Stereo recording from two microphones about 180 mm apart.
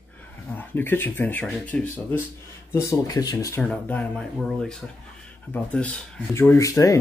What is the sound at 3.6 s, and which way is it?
Speech, 10° left (ahead or behind).